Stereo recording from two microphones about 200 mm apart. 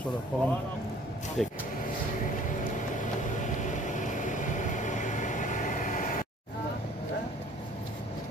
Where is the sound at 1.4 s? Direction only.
Centre (ahead or behind).